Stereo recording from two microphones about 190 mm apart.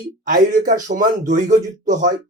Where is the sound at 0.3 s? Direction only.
45° right (ahead or behind).